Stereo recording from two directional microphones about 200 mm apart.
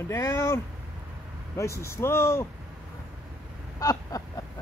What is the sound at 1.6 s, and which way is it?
Speech, 15° left (ahead or behind).